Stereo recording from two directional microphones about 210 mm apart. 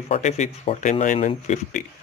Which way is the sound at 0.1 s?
35° left (ahead or behind).